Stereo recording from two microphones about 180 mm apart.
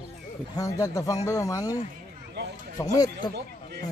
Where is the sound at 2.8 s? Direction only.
20° left (ahead or behind).